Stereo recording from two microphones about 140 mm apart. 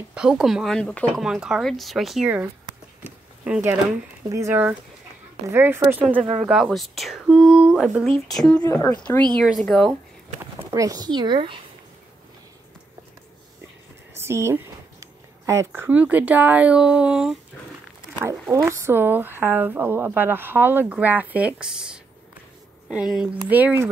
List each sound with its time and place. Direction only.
0.1 s speech: 5° right (ahead or behind)
1.2 s speech: 5° right (ahead or behind)
3.0 s a sound: 15° right (ahead or behind)
4.3 s speech: 20° right (ahead or behind)
6.4 s speech: centre (ahead or behind)
9.4 s speech: centre (ahead or behind)
10.7 s speech: 25° right (ahead or behind)
14.1 s speech: 20° right (ahead or behind)
18.6 s speech: 20° right (ahead or behind)